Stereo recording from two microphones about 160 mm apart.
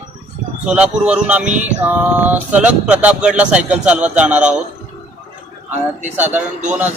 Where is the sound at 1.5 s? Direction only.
50° right (ahead or behind).